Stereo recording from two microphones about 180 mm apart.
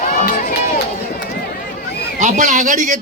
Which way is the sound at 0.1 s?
50° left (ahead or behind).